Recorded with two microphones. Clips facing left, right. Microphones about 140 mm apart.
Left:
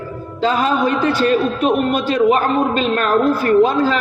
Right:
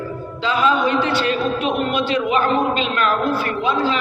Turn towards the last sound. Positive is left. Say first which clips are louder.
# left 7 dB
turn(degrees=45)  # may be behind; listen again after turning